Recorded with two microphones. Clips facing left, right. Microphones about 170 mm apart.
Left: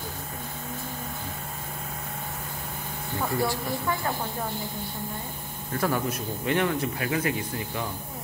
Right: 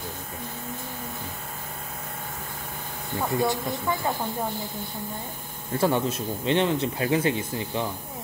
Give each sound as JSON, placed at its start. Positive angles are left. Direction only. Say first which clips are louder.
{"t": 3.2, "sound": "speech", "louder": "right 2 dB", "side_deg": -20}
{"t": 5.8, "sound": "speech", "louder": "right 3 dB", "side_deg": -25}